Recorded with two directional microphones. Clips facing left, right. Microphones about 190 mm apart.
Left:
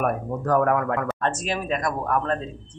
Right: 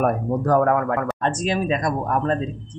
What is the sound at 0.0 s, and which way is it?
Speech, 35° right (ahead or behind).